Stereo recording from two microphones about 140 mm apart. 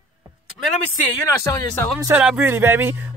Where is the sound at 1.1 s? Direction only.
20° left (ahead or behind).